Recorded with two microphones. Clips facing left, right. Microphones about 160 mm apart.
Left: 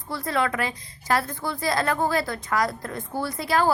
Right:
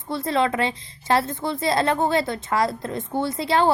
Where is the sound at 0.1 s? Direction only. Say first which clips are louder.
Right 4 dB; 25° right (ahead or behind).